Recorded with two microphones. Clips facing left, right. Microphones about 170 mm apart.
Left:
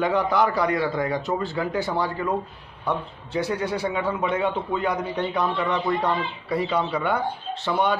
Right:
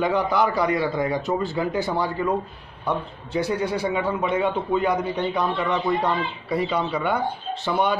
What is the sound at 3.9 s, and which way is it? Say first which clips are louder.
Speech: right 1 dB; 5° right (ahead or behind).